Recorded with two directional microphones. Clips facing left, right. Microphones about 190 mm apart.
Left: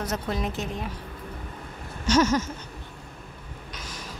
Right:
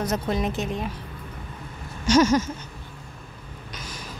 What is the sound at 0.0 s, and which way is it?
Speech, 20° right (ahead or behind).